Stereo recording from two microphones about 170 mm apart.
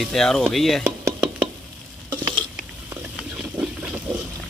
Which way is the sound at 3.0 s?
10° right (ahead or behind).